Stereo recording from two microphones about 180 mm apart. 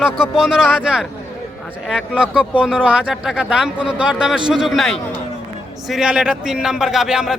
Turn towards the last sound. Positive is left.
turn(degrees=-5)  # may be behind; listen again after turning